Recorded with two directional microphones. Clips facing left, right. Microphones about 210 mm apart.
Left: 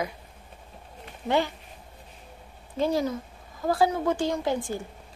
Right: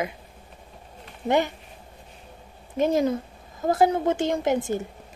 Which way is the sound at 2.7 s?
20° right (ahead or behind).